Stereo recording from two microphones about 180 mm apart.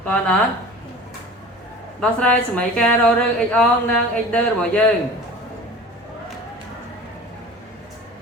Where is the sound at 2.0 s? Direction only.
5° left (ahead or behind).